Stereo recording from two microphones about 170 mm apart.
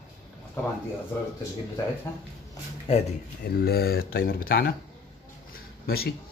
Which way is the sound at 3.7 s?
65° left (ahead or behind).